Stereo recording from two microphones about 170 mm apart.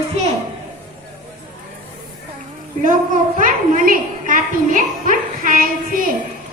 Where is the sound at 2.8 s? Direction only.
50° right (ahead or behind).